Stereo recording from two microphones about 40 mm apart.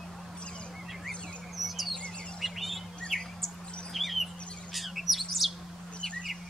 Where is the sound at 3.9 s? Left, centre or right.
Centre.